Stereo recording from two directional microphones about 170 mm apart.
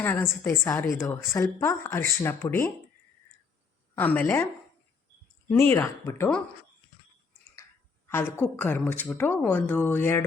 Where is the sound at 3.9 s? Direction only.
10° left (ahead or behind).